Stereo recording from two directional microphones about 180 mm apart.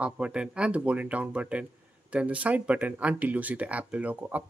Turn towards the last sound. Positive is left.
turn(degrees=-10)  # may be behind; listen again after turning